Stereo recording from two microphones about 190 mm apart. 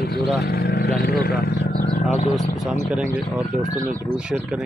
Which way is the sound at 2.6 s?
Centre (ahead or behind).